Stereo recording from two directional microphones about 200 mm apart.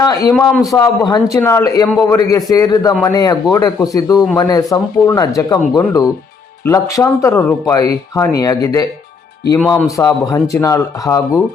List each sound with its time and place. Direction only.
0.0 s speech: 15° left (ahead or behind)
9.6 s speech: 5° left (ahead or behind)